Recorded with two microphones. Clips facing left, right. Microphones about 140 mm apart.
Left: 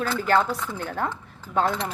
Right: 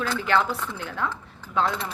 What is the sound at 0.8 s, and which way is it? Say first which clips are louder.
Cutlery: left 2 dB; 45° left (ahead or behind).